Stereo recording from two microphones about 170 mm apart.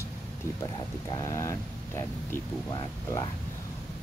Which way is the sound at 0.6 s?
20° left (ahead or behind).